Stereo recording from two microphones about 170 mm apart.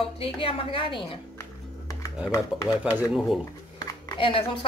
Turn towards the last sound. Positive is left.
turn(degrees=30)  # may be behind; listen again after turning